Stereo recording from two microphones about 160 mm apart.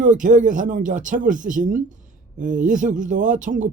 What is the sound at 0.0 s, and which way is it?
Speech, 55° right (ahead or behind).